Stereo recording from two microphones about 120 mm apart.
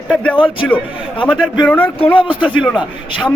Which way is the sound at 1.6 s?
10° left (ahead or behind).